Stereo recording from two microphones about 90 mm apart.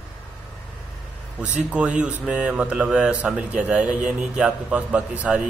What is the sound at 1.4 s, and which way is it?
A man's voice, 15° right (ahead or behind).